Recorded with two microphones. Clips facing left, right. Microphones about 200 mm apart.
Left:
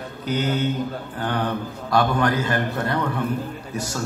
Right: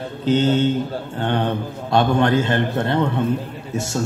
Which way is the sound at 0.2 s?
25° right (ahead or behind).